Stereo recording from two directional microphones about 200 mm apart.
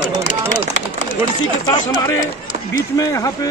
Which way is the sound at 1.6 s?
20° left (ahead or behind).